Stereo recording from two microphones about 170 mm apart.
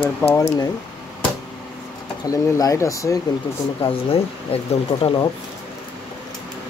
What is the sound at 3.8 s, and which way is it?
Speech, 35° left (ahead or behind).